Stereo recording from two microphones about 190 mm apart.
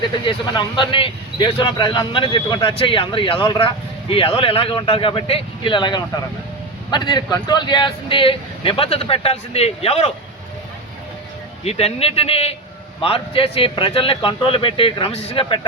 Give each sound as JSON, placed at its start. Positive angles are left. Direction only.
{"t": 0.3, "sound": "speech", "side_deg": 25}
{"t": 11.6, "sound": "speech", "side_deg": 35}